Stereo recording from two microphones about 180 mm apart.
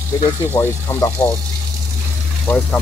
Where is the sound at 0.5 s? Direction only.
15° left (ahead or behind).